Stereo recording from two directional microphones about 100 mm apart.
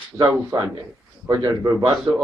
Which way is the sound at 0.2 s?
35° right (ahead or behind).